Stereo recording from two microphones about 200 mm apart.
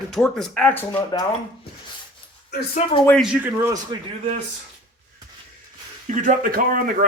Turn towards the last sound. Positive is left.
turn(degrees=-45)  # may be behind; listen again after turning